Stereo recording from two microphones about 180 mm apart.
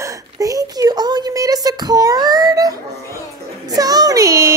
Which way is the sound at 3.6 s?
20° right (ahead or behind).